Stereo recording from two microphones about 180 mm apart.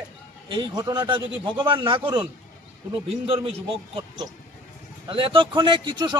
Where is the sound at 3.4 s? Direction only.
25° right (ahead or behind).